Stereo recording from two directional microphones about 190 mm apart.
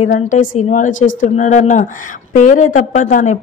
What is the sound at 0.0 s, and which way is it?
Speech, 40° left (ahead or behind).